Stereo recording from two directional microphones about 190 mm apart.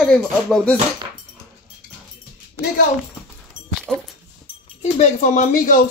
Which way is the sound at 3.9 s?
Centre (ahead or behind).